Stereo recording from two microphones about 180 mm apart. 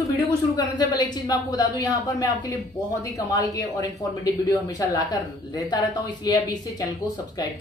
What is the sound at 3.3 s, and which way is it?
Speech, 20° left (ahead or behind).